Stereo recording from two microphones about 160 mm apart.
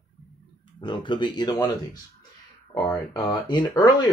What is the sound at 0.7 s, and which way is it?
Speech, 30° left (ahead or behind).